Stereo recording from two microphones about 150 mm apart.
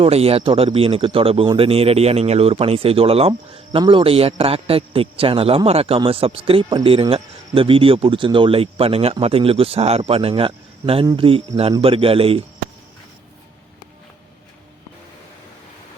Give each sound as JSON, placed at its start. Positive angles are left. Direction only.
{"t": 0.0, "sound": "speech", "side_deg": -40}